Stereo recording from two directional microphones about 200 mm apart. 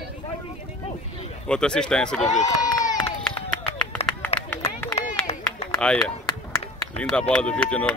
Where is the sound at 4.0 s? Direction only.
30° left (ahead or behind).